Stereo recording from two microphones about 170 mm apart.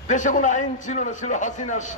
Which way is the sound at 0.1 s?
50° left (ahead or behind).